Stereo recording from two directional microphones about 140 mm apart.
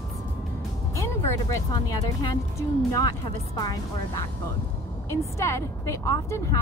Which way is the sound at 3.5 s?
25° left (ahead or behind).